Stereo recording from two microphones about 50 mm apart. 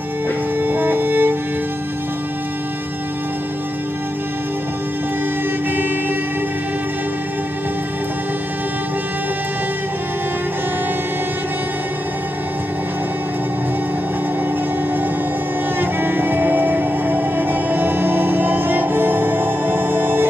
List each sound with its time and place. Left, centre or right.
0.6 s music: right
15.8 s music: right